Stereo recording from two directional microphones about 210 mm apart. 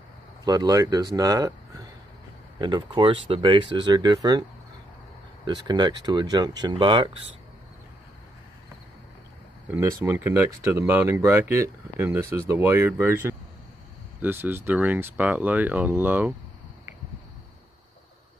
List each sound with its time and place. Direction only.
0.5 s speech: 15° right (ahead or behind)
5.5 s speech: 20° right (ahead or behind)
9.7 s speech: 10° right (ahead or behind)